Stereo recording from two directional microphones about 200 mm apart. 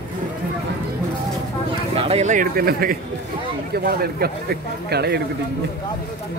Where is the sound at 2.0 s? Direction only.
30° right (ahead or behind); by 5.2 s 55° right (ahead or behind).